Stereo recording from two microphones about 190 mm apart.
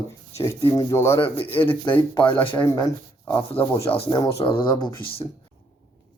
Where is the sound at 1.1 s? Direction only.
30° left (ahead or behind).